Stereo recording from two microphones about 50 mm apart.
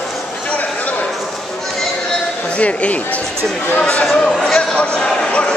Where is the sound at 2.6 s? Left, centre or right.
Left.